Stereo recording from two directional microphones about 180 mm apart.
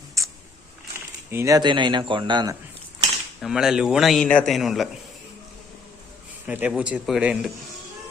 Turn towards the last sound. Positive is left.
turn(degrees=-5)  # may be behind; listen again after turning